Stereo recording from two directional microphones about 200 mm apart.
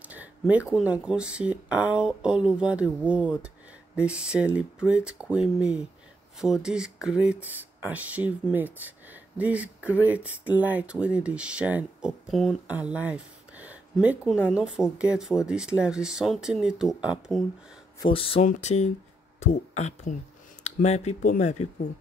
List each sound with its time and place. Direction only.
0.0 s speech: 5° right (ahead or behind)
18.0 s speech: 25° left (ahead or behind)